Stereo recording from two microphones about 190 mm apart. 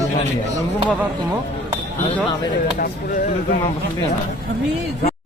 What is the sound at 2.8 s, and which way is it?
Speech, 50° left (ahead or behind).